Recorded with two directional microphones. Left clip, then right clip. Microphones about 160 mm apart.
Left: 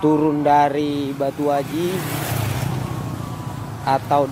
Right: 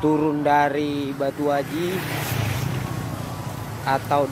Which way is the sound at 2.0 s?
90° left.